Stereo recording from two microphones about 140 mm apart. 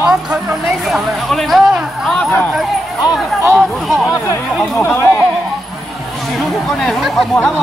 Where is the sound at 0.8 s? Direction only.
Centre (ahead or behind).